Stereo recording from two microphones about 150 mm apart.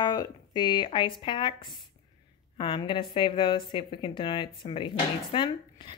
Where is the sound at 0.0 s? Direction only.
30° left (ahead or behind).